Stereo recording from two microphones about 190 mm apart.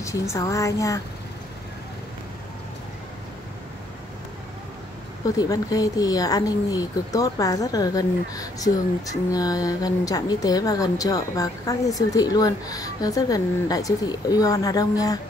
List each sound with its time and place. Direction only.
0.0 s a woman's voice: 15° left (ahead or behind)
5.4 s speech: 20° left (ahead or behind)